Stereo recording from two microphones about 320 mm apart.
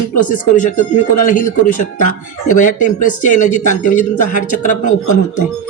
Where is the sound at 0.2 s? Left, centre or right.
Left.